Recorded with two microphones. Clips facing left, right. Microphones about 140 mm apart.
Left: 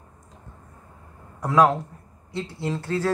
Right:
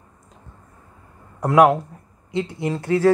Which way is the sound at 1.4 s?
15° right (ahead or behind).